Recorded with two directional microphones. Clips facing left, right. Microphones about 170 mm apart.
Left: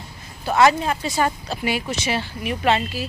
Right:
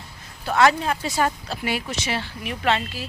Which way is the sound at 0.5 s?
5° left (ahead or behind).